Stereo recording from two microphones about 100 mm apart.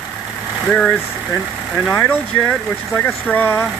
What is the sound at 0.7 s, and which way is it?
Speech, 10° left (ahead or behind).